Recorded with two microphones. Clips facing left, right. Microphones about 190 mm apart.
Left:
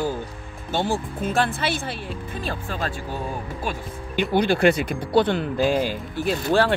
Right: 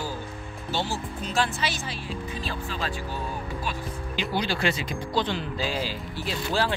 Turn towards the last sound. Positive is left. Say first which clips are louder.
# left 7 dB
turn(degrees=55)  # may be behind; listen again after turning